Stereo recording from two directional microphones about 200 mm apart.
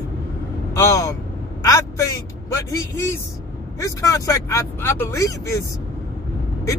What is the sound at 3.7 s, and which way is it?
Speech, 15° left (ahead or behind).